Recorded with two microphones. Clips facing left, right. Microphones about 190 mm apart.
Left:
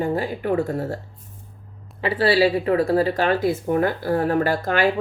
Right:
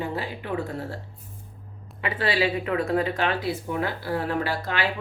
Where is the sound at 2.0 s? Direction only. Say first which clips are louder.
Left 7 dB; 30° left (ahead or behind).